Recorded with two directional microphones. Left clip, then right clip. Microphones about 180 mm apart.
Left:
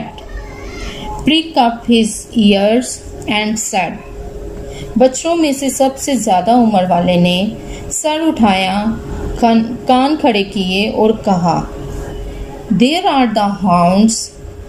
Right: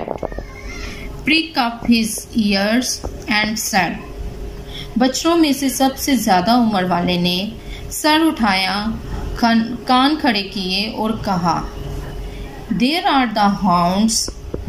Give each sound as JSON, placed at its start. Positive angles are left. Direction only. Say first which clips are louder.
{"t": 1.2, "sound": "a woman's voice", "louder": "left 5 dB", "side_deg": 20}
{"t": 4.9, "sound": "a woman's voice", "louder": "left 4 dB", "side_deg": 15}
{"t": 12.7, "sound": "a woman's voice", "louder": "left 4 dB", "side_deg": 10}